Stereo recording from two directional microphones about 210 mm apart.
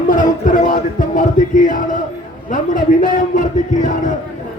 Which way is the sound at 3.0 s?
35° left (ahead or behind).